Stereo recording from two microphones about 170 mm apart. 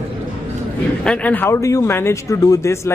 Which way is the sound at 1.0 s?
5° left (ahead or behind).